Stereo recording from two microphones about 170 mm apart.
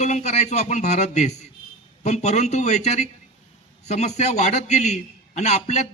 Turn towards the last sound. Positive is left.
turn(degrees=40)  # may be behind; listen again after turning